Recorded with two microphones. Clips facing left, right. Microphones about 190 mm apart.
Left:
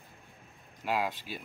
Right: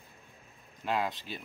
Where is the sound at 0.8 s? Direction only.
10° left (ahead or behind).